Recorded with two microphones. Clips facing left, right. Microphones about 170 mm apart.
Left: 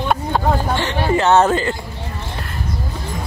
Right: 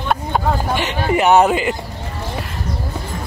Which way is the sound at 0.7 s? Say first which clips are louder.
Even; 15° right (ahead or behind).